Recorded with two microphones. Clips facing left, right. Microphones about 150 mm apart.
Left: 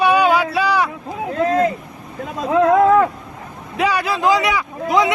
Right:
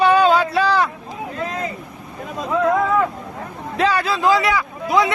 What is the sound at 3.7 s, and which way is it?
Speech, 15° left (ahead or behind).